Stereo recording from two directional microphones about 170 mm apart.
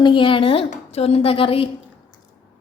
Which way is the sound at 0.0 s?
30° left (ahead or behind).